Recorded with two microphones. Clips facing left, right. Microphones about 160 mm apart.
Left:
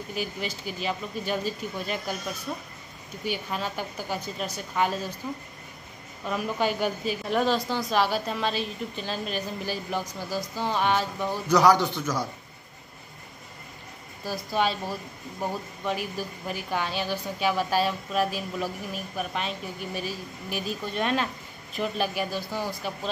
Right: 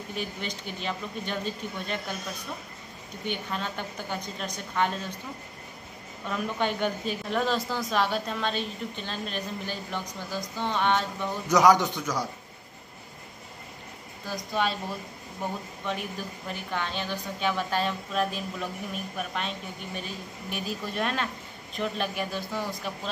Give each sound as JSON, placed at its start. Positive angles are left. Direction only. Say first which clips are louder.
{"t": 0.1, "sound": "a woman's voice", "louder": "left 2 dB", "side_deg": 5}
{"t": 3.3, "sound": "a woman's voice", "louder": "left 2 dB", "side_deg": 5}
{"t": 6.2, "sound": "a woman's voice", "louder": "left 2 dB", "side_deg": 5}
{"t": 11.4, "sound": "a man's voice", "louder": "even", "side_deg": -20}
{"t": 14.2, "sound": "a woman's voice", "louder": "left 2 dB", "side_deg": 5}